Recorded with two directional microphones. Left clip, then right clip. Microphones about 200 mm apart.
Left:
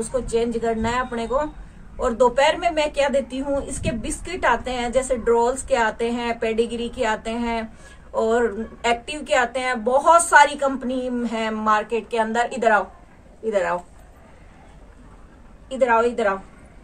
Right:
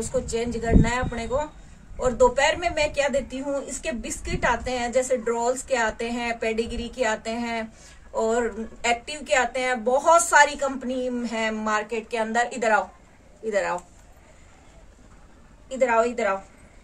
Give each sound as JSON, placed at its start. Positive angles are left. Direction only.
{"t": 0.1, "sound": "a woman's voice", "side_deg": -10}
{"t": 15.7, "sound": "a woman's voice", "side_deg": -10}